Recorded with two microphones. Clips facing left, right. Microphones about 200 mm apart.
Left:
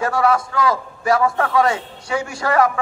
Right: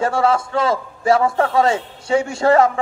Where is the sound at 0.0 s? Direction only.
25° right (ahead or behind).